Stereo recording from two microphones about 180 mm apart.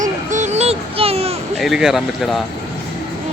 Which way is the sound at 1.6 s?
Centre (ahead or behind).